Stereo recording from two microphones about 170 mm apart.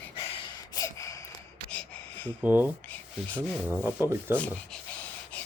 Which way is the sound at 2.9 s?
10° left (ahead or behind).